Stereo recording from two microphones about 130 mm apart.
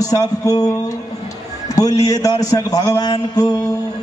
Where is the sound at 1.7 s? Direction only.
25° left (ahead or behind).